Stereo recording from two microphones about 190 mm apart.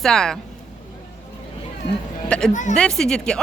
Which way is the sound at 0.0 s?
5° left (ahead or behind).